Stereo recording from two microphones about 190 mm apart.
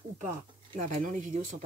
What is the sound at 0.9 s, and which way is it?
Speech, 45° right (ahead or behind).